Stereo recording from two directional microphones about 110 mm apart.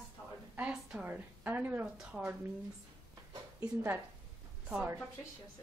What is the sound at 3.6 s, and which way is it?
A woman's voice, 25° right (ahead or behind).